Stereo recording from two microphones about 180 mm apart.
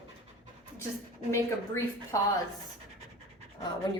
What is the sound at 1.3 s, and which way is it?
Speech, 15° left (ahead or behind).